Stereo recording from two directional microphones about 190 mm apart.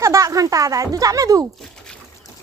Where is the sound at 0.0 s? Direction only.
15° right (ahead or behind).